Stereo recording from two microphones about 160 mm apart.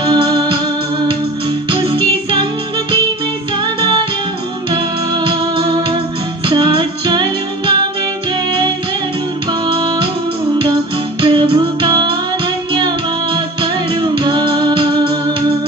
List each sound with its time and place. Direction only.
0.0 s music: 25° right (ahead or behind)
1.7 s music: 30° right (ahead or behind)
4.6 s music: 30° right (ahead or behind)
9.7 s music: 30° right (ahead or behind)
11.1 s music: 30° right (ahead or behind)